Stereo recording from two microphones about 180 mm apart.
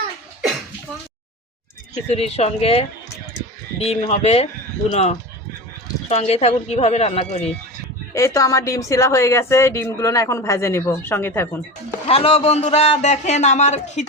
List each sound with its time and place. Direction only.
2.1 s speech: 35° left (ahead or behind)
8.1 s speech: 15° left (ahead or behind)
12.0 s speech: 35° left (ahead or behind)